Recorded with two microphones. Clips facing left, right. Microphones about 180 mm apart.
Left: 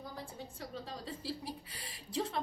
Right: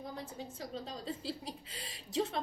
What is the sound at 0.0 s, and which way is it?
A woman's voice, 25° right (ahead or behind).